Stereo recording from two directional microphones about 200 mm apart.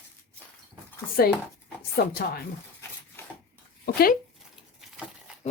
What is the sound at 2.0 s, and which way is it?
Speech, 55° left (ahead or behind).